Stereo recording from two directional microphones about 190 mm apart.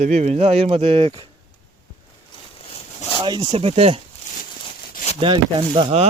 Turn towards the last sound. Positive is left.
turn(degrees=-30)  # may be behind; listen again after turning